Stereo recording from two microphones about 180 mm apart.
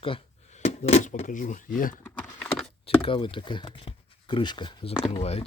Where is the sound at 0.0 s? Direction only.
35° left (ahead or behind); by 2.0 s 50° left (ahead or behind).